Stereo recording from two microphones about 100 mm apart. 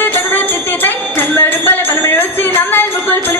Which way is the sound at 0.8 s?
20° left (ahead or behind).